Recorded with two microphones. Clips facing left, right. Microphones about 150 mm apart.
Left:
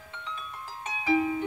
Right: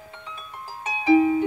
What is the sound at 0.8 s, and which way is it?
Music, 25° right (ahead or behind).